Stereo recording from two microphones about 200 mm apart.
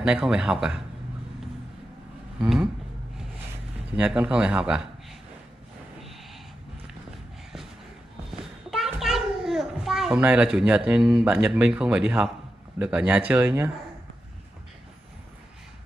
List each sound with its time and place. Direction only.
0.0 s a man's voice: 5° right (ahead or behind)
2.4 s a man's voice: 5° right (ahead or behind)
3.9 s speech: 10° right (ahead or behind)
8.4 s a sound: centre (ahead or behind)
10.9 s speech: 5° right (ahead or behind)